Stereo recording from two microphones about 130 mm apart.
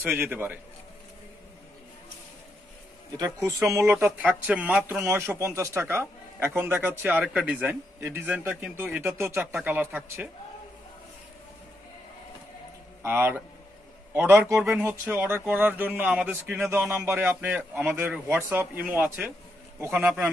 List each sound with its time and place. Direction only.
0.0 s speech: 15° right (ahead or behind)
3.2 s a man's voice: 25° right (ahead or behind); by 5.0 s 10° right (ahead or behind)
5.0 s a man's voice: 20° right (ahead or behind)
13.0 s speech: 15° right (ahead or behind)